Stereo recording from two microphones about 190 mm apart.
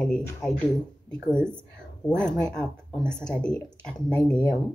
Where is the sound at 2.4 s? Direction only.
5° left (ahead or behind).